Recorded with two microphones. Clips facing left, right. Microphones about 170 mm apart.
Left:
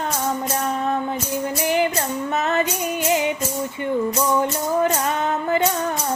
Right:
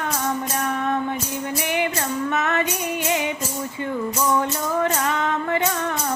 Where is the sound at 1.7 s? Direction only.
30° left (ahead or behind).